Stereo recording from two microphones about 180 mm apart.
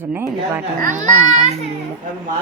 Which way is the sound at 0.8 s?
45° right (ahead or behind).